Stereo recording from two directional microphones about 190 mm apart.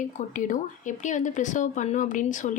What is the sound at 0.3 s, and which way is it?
A woman's voice, 45° left (ahead or behind).